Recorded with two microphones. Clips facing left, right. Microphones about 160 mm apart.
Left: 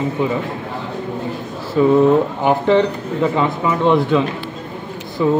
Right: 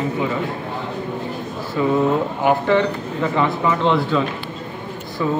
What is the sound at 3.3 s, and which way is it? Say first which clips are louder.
Speech: left 1 dB; 15° left (ahead or behind).